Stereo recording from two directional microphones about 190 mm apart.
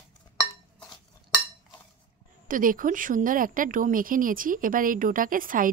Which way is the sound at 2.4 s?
45° right (ahead or behind).